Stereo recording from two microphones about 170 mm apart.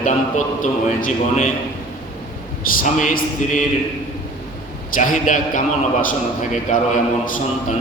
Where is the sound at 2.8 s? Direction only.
50° left (ahead or behind).